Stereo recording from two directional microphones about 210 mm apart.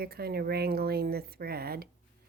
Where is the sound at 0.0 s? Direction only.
45° right (ahead or behind).